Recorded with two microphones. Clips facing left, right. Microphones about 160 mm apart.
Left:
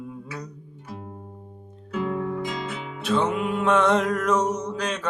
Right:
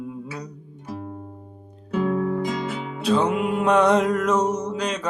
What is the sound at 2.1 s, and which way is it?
Music, 35° right (ahead or behind).